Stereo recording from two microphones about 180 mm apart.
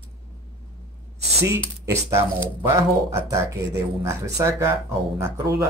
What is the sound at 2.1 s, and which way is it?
Speech, 15° right (ahead or behind).